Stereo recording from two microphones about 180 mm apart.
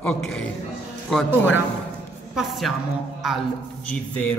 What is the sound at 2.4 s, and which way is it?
Speech, centre (ahead or behind).